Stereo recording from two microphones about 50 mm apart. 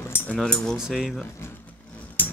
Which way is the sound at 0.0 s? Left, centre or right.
Left.